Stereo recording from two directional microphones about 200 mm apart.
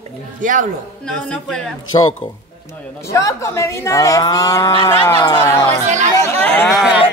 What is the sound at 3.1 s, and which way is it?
Speech, 15° left (ahead or behind).